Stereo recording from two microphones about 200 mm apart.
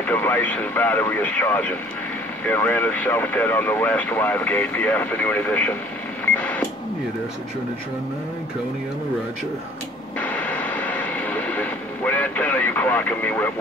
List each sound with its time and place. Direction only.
0.0 s speech: 10° left (ahead or behind)
6.2 s a sound: 10° left (ahead or behind)
10.2 s vehicle: 10° left (ahead or behind)